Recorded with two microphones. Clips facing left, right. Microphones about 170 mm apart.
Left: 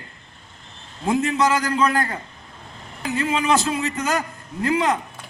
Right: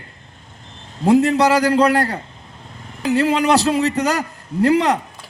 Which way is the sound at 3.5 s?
35° right (ahead or behind).